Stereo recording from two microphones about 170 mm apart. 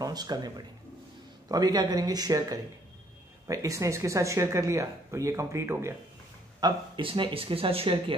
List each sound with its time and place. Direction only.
0.0 s speech: 25° right (ahead or behind)
6.6 s speech: 30° right (ahead or behind)